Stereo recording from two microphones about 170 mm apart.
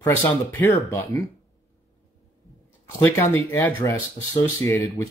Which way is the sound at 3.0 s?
15° left (ahead or behind).